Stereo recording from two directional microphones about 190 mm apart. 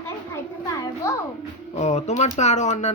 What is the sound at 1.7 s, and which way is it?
Speech, 35° left (ahead or behind).